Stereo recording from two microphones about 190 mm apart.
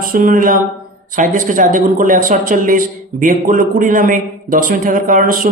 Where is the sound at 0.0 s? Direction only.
50° right (ahead or behind).